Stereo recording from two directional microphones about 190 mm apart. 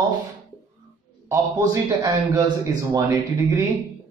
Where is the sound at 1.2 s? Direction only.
15° right (ahead or behind).